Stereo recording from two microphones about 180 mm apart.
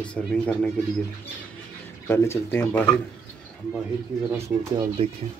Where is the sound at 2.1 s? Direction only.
15° left (ahead or behind).